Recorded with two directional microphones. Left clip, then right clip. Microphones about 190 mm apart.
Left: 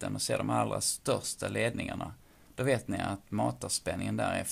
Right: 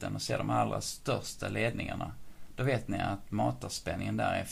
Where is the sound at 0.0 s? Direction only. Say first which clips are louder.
Left 2 dB; 40° left (ahead or behind).